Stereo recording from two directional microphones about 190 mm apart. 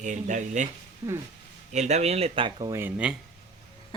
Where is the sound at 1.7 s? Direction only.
35° right (ahead or behind); by 3.1 s 10° right (ahead or behind).